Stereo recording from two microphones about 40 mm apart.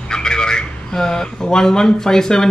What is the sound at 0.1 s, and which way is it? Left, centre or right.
A man's voice, centre.